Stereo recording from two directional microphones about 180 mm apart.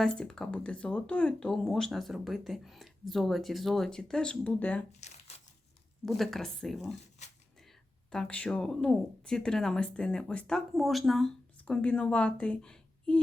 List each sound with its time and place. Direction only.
0.0 s speech: 5° left (ahead or behind)
4.9 s speech: 40° left (ahead or behind)
6.1 s speech: centre (ahead or behind)